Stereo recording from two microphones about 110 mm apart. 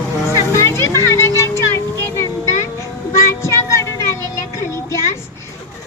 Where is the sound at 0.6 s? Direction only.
25° left (ahead or behind).